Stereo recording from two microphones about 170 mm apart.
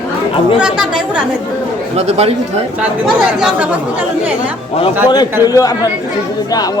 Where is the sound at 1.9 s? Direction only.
40° right (ahead or behind).